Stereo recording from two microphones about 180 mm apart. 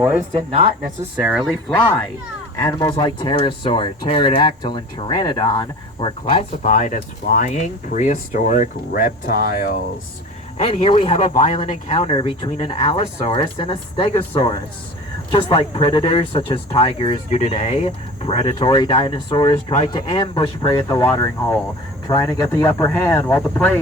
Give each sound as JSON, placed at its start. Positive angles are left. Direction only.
{"t": 0.3, "sound": "speech", "side_deg": -30}
{"t": 1.1, "sound": "speech", "side_deg": -5}
{"t": 2.6, "sound": "speech", "side_deg": 20}
{"t": 6.3, "sound": "speech", "side_deg": 45}
{"t": 10.6, "sound": "speech", "side_deg": 35}